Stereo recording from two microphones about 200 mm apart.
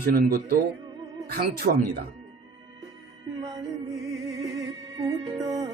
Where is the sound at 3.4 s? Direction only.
20° right (ahead or behind).